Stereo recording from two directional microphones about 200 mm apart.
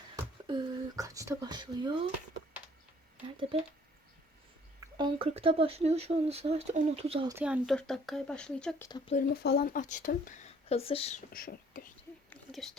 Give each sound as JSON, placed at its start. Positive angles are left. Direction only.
{"t": 0.4, "sound": "a sound", "side_deg": -25}
{"t": 4.8, "sound": "speech", "side_deg": -20}
{"t": 7.3, "sound": "speech", "side_deg": -10}
{"t": 9.1, "sound": "speech", "side_deg": 50}
{"t": 10.7, "sound": "speech", "side_deg": 30}
{"t": 11.3, "sound": "speech", "side_deg": 45}
{"t": 12.3, "sound": "whispering", "side_deg": 0}